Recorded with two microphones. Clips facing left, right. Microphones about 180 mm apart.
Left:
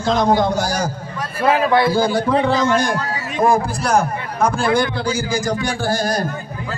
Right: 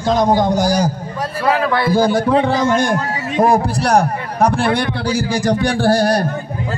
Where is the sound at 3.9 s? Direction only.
35° right (ahead or behind).